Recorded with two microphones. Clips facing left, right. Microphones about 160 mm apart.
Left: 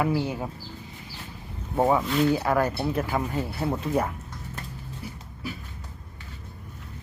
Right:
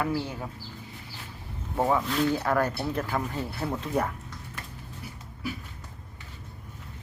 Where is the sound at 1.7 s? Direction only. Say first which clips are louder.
Left 3 dB; 20° left (ahead or behind).